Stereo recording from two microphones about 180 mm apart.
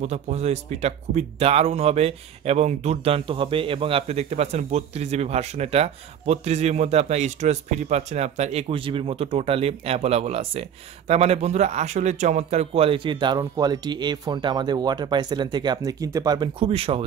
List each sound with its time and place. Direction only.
0.0 s speech: 35° right (ahead or behind)